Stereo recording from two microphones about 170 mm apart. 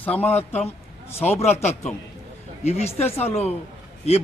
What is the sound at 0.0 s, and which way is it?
Speech, 10° left (ahead or behind).